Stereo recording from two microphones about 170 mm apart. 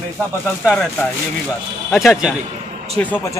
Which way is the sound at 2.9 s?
10° left (ahead or behind).